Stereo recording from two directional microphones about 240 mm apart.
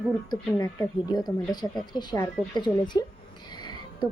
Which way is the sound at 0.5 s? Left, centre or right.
Centre.